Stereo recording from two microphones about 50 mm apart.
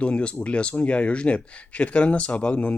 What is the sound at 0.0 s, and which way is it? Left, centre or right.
Speech, left.